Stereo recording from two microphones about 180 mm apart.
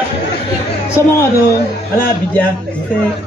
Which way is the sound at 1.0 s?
15° left (ahead or behind).